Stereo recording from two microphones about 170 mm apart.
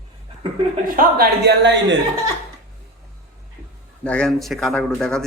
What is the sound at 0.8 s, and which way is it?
A man's voice, 60° right (ahead or behind).